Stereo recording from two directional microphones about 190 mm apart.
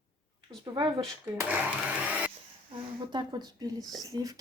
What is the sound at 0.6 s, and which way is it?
Speech, 20° right (ahead or behind).